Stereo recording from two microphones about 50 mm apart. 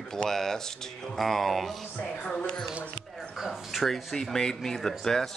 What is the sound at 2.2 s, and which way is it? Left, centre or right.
Speech, centre.